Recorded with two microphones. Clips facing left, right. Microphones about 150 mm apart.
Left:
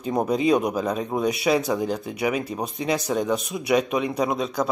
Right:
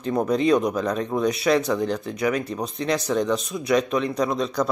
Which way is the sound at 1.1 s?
20° left (ahead or behind).